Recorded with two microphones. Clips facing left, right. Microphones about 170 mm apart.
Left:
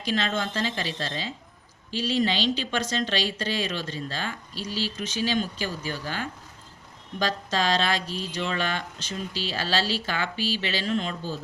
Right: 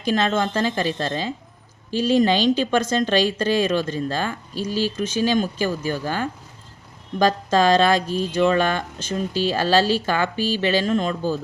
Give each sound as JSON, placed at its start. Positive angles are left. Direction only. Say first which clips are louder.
{"t": 0.0, "sound": "speech", "louder": "right 7 dB", "side_deg": -50}